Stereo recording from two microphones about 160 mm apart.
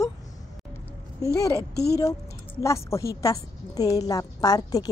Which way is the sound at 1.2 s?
20° left (ahead or behind).